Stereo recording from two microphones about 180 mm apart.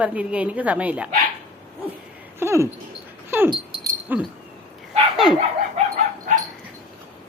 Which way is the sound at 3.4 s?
25° right (ahead or behind).